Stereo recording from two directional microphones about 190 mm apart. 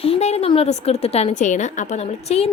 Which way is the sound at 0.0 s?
35° left (ahead or behind).